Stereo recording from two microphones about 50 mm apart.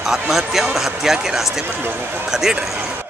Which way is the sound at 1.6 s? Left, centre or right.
Right.